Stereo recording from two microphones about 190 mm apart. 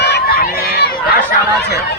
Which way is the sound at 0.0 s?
55° left (ahead or behind).